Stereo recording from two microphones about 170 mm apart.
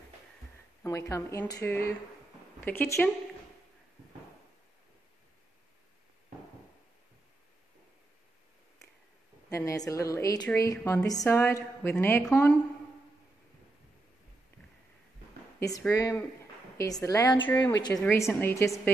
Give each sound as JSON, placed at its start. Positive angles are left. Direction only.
{"t": 0.8, "sound": "speech", "side_deg": 20}
{"t": 9.5, "sound": "a woman's voice", "side_deg": 20}
{"t": 10.8, "sound": "a woman's voice", "side_deg": 10}
{"t": 15.8, "sound": "a woman's voice", "side_deg": 15}